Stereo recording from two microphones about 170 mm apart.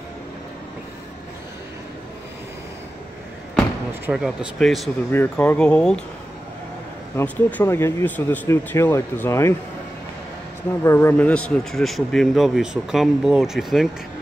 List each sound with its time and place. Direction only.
4.0 s a man's voice: 5° right (ahead or behind)
5.1 s speech: 10° left (ahead or behind)
7.2 s speech: 15° left (ahead or behind)
10.8 s a man's voice: 15° left (ahead or behind); by 13.8 s centre (ahead or behind)